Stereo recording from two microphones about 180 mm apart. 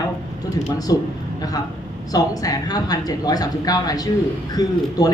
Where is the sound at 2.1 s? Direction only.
20° left (ahead or behind).